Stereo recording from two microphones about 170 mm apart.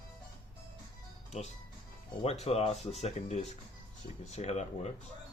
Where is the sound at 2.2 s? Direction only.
40° left (ahead or behind).